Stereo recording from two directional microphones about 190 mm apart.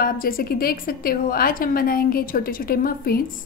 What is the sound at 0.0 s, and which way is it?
A woman's voice, 50° left (ahead or behind).